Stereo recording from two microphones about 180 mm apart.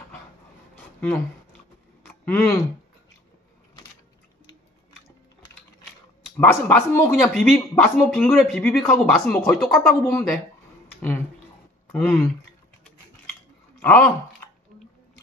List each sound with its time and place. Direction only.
0.7 s a sound: 10° left (ahead or behind)
2.2 s speech: 10° left (ahead or behind)
6.3 s speech: 15° left (ahead or behind)
13.7 s speech: 10° left (ahead or behind)